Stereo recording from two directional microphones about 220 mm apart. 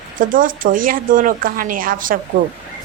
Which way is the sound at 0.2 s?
40° right (ahead or behind).